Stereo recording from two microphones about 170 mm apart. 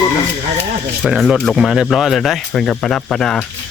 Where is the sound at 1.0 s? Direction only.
Centre (ahead or behind).